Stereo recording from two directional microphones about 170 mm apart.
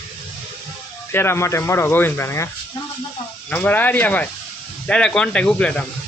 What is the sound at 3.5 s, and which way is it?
Speech, 10° left (ahead or behind).